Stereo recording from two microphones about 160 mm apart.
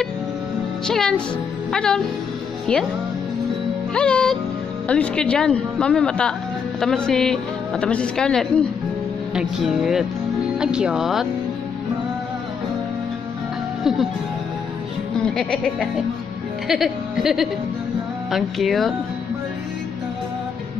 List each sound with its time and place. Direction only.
0.8 s speech: 5° left (ahead or behind)
1.7 s music: 5° left (ahead or behind)
2.7 s speech: 5° left (ahead or behind)
3.9 s speech: 5° left (ahead or behind)
15.2 s speech: 5° left (ahead or behind)